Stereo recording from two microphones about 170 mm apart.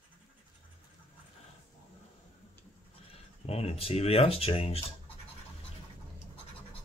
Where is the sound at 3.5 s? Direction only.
35° left (ahead or behind).